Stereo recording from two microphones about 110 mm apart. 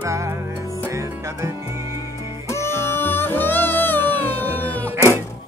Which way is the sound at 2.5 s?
25° left (ahead or behind).